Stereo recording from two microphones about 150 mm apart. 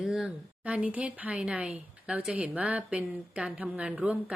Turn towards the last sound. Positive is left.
turn(degrees=-10)  # may be behind; listen again after turning